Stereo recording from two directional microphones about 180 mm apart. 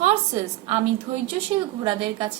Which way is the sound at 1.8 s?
25° right (ahead or behind).